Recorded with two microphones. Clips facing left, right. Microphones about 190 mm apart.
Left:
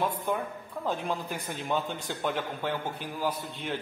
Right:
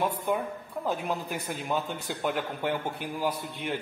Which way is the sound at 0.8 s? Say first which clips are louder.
Right 1 dB; 10° right (ahead or behind).